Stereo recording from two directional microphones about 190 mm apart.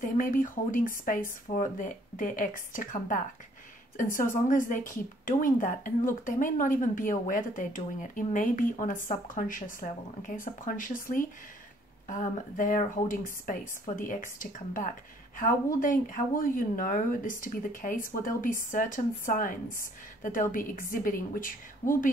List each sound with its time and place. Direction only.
0.0 s a woman's voice: 45° left (ahead or behind)